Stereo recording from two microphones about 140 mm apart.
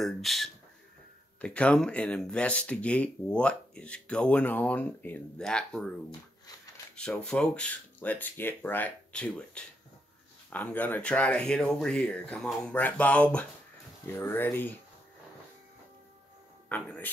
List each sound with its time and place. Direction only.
0.0 s speech: centre (ahead or behind)
7.2 s speech: 5° left (ahead or behind)
16.6 s speech: 10° left (ahead or behind)